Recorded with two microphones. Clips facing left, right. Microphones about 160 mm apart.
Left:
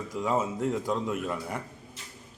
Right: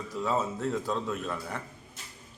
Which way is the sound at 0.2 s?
15° left (ahead or behind).